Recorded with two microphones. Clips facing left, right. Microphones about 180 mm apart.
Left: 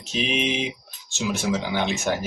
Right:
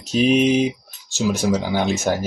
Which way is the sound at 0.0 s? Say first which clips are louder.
Right 9 dB; 40° right (ahead or behind).